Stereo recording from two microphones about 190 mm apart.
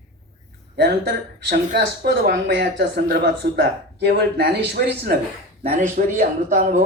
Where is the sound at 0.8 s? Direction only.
60° right (ahead or behind).